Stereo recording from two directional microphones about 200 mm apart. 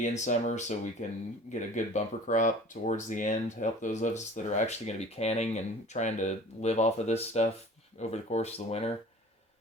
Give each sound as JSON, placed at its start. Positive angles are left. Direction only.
{"t": 0.0, "sound": "speech", "side_deg": 35}